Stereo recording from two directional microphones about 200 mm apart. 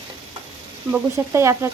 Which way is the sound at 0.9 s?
15° right (ahead or behind).